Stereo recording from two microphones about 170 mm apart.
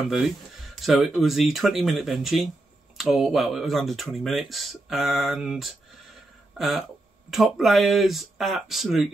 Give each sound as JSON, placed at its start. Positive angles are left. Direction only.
{"t": 0.7, "sound": "speech", "side_deg": 0}
{"t": 7.2, "sound": "speech", "side_deg": 0}